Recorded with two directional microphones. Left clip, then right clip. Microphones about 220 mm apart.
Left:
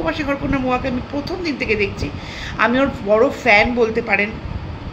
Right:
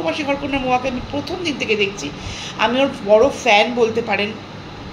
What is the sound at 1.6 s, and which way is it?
Speech, 45° left (ahead or behind).